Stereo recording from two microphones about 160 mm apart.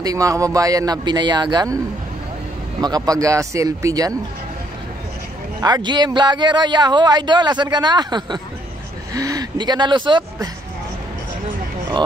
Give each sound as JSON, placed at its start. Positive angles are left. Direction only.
{"t": 0.0, "sound": "speech", "side_deg": -20}
{"t": 2.8, "sound": "speech", "side_deg": -25}
{"t": 5.6, "sound": "speech", "side_deg": -25}